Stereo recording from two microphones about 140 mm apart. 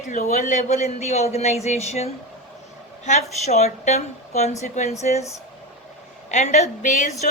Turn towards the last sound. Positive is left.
turn(degrees=60)  # may be behind; listen again after turning